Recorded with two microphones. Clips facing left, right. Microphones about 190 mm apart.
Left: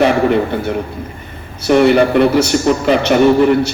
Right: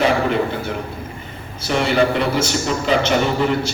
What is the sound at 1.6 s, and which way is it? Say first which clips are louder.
A man's voice: left 8 dB; 55° left (ahead or behind).